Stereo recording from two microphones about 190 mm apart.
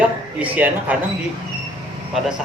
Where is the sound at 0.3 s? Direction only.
10° right (ahead or behind).